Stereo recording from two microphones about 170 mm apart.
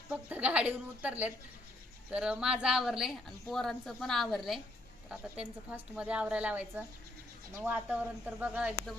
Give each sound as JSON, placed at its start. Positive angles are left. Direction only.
{"t": 0.1, "sound": "a woman's voice", "side_deg": -10}